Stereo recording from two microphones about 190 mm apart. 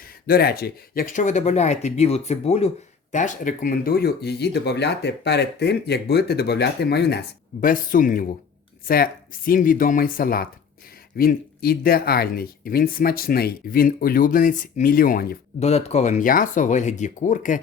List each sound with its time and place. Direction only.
0.0 s speech: 50° left (ahead or behind)
15.6 s speech: 35° left (ahead or behind)